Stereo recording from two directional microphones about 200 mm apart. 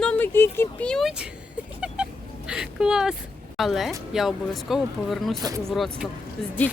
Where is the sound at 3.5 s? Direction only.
Centre (ahead or behind).